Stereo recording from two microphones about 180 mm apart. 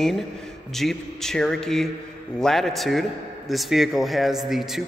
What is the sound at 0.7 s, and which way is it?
A man's voice, centre (ahead or behind).